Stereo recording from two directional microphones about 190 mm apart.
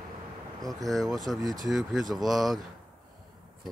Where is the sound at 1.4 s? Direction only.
20° right (ahead or behind).